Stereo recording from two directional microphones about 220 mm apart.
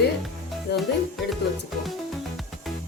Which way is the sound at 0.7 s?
50° left (ahead or behind).